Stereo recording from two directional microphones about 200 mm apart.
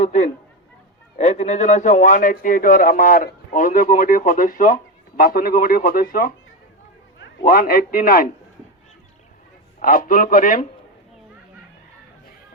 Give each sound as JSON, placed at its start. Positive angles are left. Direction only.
{"t": 0.0, "sound": "a man's voice", "side_deg": 35}
{"t": 7.4, "sound": "a man's voice", "side_deg": 45}
{"t": 9.8, "sound": "a man's voice", "side_deg": 45}